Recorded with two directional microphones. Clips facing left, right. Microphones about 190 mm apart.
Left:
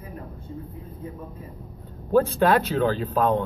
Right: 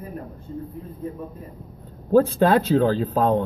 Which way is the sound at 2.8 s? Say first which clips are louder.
Right 3 dB; 35° right (ahead or behind).